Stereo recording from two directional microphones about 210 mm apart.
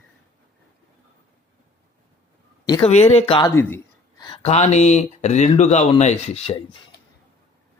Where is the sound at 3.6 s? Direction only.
10° left (ahead or behind); by 6.6 s 30° left (ahead or behind).